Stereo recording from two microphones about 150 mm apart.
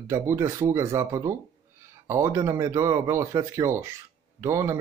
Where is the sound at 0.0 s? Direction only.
15° right (ahead or behind).